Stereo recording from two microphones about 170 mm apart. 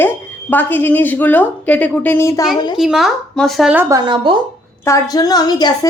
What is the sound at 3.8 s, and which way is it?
Speech, 25° right (ahead or behind).